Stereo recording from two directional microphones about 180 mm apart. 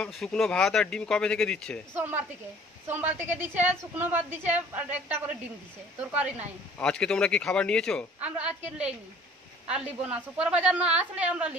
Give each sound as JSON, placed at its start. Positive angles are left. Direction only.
{"t": 0.0, "sound": "speech", "side_deg": 5}
{"t": 2.0, "sound": "a woman's voice", "side_deg": -10}
{"t": 6.8, "sound": "speech", "side_deg": 5}
{"t": 8.2, "sound": "a woman's voice", "side_deg": -5}